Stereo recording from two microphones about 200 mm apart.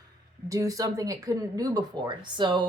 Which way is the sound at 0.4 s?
15° right (ahead or behind).